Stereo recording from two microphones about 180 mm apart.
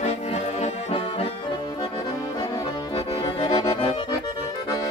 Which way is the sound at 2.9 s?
30° left (ahead or behind).